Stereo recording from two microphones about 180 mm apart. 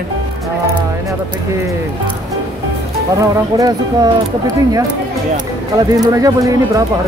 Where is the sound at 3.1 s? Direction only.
20° right (ahead or behind).